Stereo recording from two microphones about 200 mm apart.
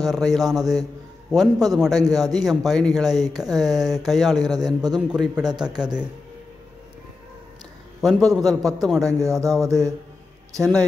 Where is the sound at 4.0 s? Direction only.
Centre (ahead or behind).